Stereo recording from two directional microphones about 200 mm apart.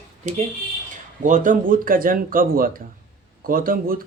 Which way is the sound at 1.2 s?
40° right (ahead or behind).